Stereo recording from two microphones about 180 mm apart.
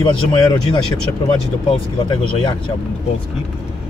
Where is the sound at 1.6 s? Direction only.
30° left (ahead or behind).